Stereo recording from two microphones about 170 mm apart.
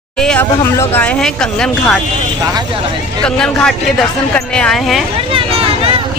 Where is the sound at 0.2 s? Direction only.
5° left (ahead or behind).